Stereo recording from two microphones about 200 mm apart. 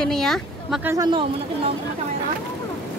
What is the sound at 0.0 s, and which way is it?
Speech, centre (ahead or behind).